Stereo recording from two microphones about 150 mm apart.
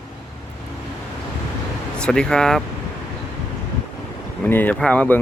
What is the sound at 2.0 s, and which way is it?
Speech, 5° left (ahead or behind).